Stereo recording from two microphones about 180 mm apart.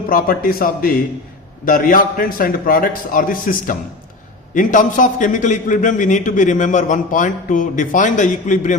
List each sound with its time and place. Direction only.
0.1 s a man's voice: 50° left (ahead or behind)